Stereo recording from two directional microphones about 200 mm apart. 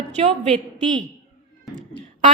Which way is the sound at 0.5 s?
Centre (ahead or behind).